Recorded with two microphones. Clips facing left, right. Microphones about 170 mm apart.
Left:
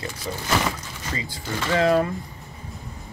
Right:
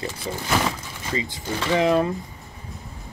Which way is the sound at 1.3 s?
20° right (ahead or behind).